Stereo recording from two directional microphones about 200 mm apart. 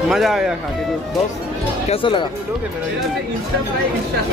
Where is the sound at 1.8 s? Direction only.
25° left (ahead or behind).